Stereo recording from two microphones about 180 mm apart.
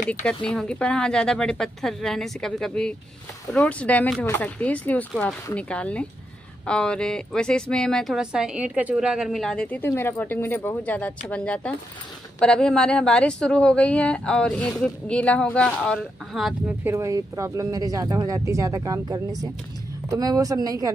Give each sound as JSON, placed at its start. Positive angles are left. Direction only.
{"t": 0.1, "sound": "a woman's voice", "side_deg": 10}
{"t": 16.8, "sound": "speech", "side_deg": -15}